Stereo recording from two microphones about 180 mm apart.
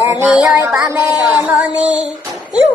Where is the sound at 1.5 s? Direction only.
5° right (ahead or behind).